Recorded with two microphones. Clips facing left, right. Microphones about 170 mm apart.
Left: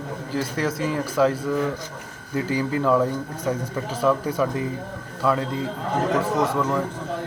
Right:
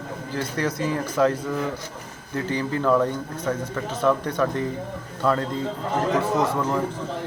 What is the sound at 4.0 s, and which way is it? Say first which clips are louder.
Speech: even; 10° left (ahead or behind).